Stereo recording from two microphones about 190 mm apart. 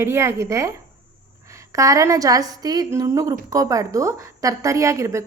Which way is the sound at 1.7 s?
15° right (ahead or behind).